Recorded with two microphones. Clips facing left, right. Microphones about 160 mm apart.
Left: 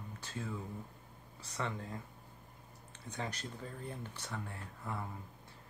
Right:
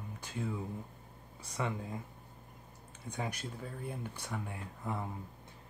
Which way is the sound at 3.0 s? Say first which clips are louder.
Right 3 dB; 10° right (ahead or behind).